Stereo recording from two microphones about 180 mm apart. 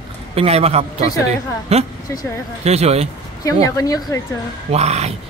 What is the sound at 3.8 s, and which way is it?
Speech, 20° left (ahead or behind).